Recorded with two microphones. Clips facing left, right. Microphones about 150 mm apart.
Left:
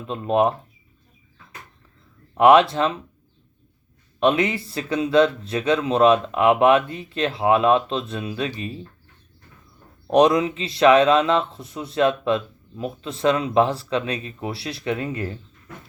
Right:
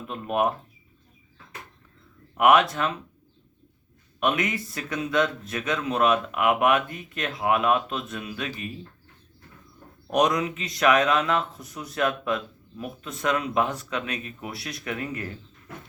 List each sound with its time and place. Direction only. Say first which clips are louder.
0.1 s speech: left 5 dB; 25° left (ahead or behind)
2.4 s speech: left 5 dB; 30° left (ahead or behind)
4.2 s speech: left 6 dB; 30° left (ahead or behind)
10.1 s speech: left 6 dB; 30° left (ahead or behind)